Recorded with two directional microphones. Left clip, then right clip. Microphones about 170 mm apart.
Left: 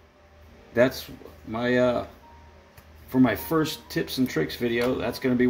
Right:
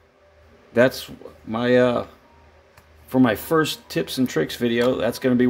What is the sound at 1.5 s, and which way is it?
Speech, 60° right (ahead or behind).